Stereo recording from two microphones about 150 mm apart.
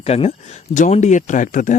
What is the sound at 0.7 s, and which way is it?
Speech, 55° left (ahead or behind).